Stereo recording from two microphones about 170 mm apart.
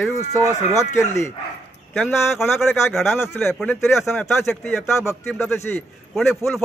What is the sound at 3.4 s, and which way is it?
Speech, centre (ahead or behind).